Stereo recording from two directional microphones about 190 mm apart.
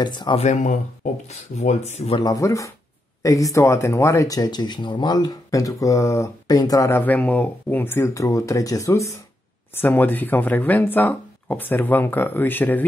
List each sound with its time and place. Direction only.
0.0 s speech: 25° left (ahead or behind)
2.1 s speech: 20° left (ahead or behind)